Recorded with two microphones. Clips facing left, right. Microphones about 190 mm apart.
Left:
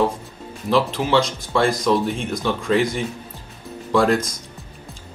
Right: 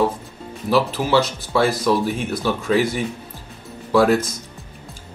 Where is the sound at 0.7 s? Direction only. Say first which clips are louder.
Right 1 dB; 5° right (ahead or behind).